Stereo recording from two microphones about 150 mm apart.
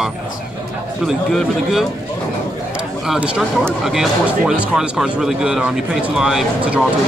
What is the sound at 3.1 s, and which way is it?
Speech, 5° right (ahead or behind).